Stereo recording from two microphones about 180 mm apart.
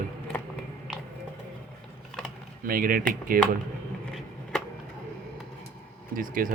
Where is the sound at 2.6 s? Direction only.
50° right (ahead or behind).